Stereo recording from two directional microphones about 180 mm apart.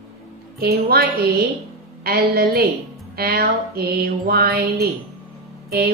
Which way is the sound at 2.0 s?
60° right (ahead or behind).